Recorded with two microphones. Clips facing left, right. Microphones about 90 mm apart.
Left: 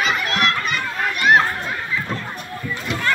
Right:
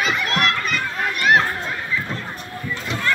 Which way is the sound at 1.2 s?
5° left (ahead or behind).